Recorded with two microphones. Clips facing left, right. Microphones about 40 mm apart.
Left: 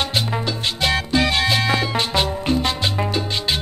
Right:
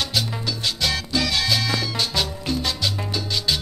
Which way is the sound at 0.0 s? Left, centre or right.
Left.